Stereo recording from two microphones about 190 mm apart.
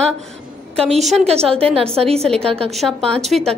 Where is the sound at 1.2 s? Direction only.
30° right (ahead or behind).